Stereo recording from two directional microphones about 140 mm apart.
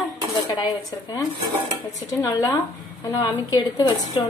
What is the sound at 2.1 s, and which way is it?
Speech, 25° left (ahead or behind).